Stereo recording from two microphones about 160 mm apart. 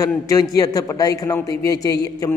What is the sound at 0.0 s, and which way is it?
A man's voice, 20° left (ahead or behind).